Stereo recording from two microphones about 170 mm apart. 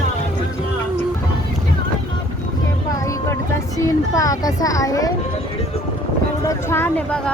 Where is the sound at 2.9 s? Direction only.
20° left (ahead or behind).